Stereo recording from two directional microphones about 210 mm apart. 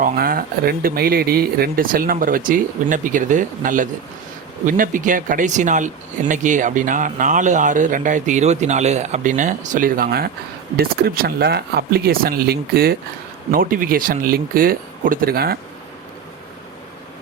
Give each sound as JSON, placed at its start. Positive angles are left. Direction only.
{"t": 0.0, "sound": "speech", "side_deg": -45}